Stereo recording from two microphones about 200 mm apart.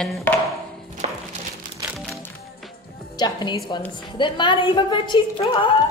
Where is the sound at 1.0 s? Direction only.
25° right (ahead or behind).